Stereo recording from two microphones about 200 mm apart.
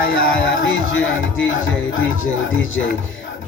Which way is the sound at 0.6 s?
75° left (ahead or behind).